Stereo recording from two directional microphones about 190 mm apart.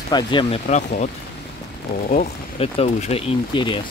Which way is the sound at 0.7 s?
40° left (ahead or behind).